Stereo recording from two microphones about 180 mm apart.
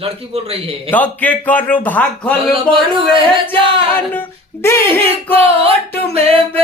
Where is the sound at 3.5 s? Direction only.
10° left (ahead or behind).